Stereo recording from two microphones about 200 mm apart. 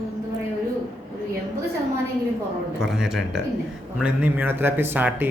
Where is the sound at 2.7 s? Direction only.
Centre (ahead or behind).